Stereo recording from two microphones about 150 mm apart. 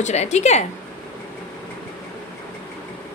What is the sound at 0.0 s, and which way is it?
Speech, 50° left (ahead or behind).